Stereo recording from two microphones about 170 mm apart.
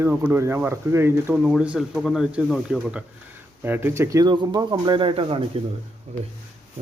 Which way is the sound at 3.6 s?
15° right (ahead or behind).